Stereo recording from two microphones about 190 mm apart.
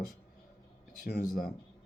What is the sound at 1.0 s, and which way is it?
Speech, 60° left (ahead or behind).